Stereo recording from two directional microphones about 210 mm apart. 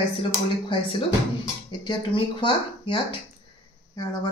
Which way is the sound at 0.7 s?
25° left (ahead or behind).